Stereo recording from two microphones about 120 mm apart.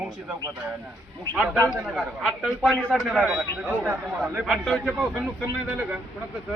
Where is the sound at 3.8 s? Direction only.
20° right (ahead or behind).